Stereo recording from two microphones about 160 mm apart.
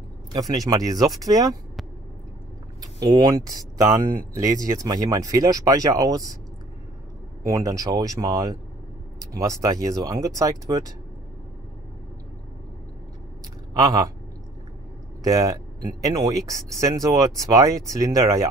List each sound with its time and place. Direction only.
0.3 s speech: 25° right (ahead or behind)
2.8 s speech: 20° right (ahead or behind)
4.6 s speech: 20° right (ahead or behind)
7.4 s speech: 20° right (ahead or behind)
13.7 s speech: 20° right (ahead or behind)
15.2 s speech: 20° right (ahead or behind)